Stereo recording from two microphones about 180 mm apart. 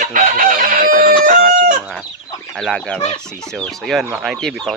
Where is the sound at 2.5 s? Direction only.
Centre (ahead or behind).